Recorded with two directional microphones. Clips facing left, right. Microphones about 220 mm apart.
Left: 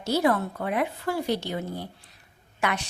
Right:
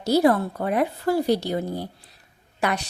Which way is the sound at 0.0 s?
35° right (ahead or behind).